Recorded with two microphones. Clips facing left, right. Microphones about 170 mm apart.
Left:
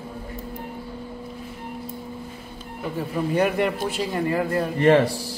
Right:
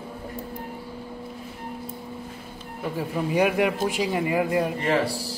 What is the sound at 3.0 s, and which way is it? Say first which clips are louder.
A man's voice: left 1 dB; 10° right (ahead or behind).